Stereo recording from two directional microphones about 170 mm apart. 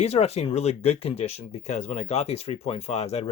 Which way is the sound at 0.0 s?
40° left (ahead or behind).